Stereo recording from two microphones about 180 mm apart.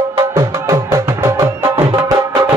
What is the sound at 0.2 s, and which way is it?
Music, 15° right (ahead or behind).